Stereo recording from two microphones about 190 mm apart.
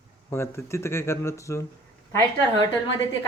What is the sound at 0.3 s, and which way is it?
Speech, 15° left (ahead or behind).